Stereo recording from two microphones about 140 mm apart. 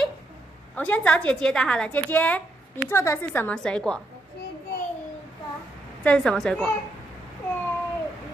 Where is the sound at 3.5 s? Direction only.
5° left (ahead or behind).